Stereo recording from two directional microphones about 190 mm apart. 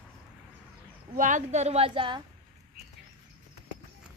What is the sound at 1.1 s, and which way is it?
A woman's voice, 40° right (ahead or behind).